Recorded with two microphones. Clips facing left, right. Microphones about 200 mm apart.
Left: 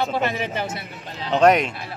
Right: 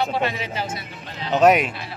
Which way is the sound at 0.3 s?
55° left (ahead or behind).